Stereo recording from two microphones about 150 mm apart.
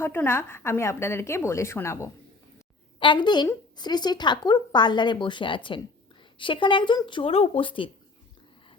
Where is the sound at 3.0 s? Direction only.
30° left (ahead or behind).